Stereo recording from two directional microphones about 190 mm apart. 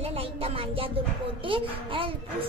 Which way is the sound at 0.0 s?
30° right (ahead or behind).